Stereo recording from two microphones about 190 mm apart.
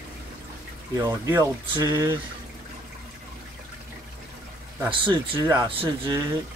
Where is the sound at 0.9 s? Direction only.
20° right (ahead or behind).